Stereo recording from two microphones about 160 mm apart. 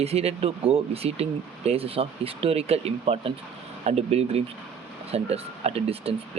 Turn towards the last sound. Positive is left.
turn(degrees=-40)  # may be behind; listen again after turning